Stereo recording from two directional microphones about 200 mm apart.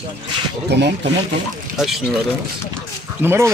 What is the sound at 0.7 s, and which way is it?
Speech, 60° right (ahead or behind).